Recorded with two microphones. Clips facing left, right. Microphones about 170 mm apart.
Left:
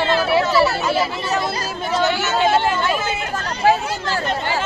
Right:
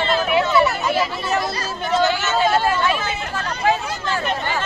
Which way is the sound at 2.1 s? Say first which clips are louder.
Left 1 dB; 20° left (ahead or behind).